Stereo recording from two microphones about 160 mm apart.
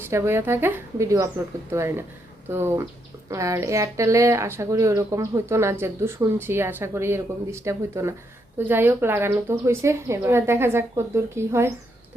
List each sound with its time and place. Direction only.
0.1 s a woman's voice: 15° right (ahead or behind)